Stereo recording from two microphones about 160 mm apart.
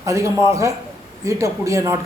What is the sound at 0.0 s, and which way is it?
Speech, 20° right (ahead or behind).